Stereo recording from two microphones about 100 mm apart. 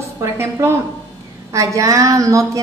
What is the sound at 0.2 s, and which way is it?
A woman's voice, 25° right (ahead or behind).